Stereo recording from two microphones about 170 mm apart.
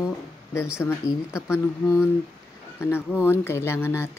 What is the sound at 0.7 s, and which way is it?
Speech, 15° left (ahead or behind).